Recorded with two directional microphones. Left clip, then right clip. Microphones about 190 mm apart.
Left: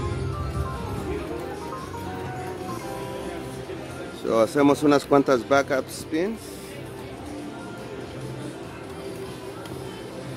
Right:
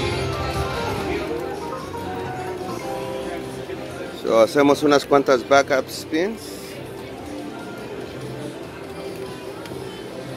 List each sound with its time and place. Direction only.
4.3 s a man's voice: 35° left (ahead or behind)